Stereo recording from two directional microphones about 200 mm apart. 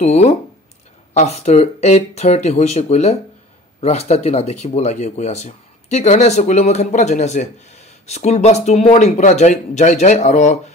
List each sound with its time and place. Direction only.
0.0 s speech: 35° left (ahead or behind)